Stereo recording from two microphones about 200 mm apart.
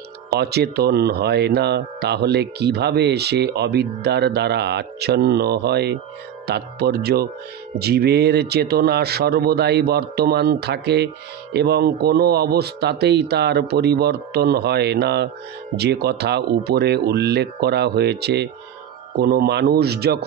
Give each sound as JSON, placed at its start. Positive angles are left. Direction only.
{"t": 0.3, "sound": "a man's voice", "side_deg": -55}